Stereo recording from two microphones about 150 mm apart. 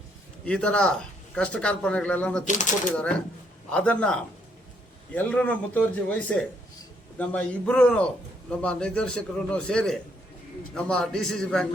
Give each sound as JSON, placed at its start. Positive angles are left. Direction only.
{"t": 0.4, "sound": "a man's voice", "side_deg": 5}
{"t": 2.5, "sound": "speech", "side_deg": 55}
{"t": 2.9, "sound": "a man's voice", "side_deg": 5}